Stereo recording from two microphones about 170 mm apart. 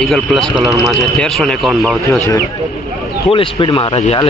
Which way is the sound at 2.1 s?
15° left (ahead or behind).